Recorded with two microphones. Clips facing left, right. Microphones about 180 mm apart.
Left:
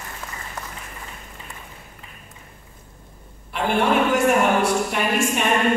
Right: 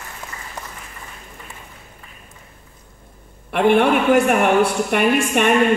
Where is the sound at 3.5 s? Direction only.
60° right (ahead or behind).